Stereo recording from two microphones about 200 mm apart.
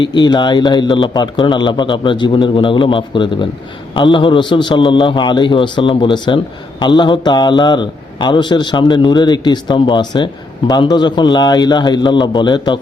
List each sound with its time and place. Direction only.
0.0 s a man's voice: 20° left (ahead or behind)